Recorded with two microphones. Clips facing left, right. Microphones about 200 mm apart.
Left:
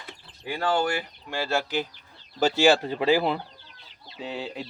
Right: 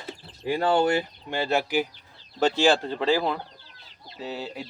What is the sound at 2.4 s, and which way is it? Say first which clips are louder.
Speech: left 1 dB; 5° left (ahead or behind).